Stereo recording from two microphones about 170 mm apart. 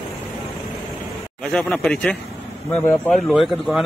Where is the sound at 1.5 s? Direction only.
Centre (ahead or behind).